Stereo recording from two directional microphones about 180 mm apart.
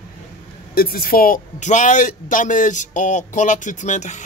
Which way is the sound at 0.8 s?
55° left (ahead or behind).